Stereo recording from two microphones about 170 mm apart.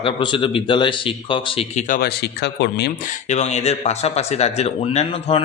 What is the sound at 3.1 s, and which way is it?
A man's voice, 40° left (ahead or behind).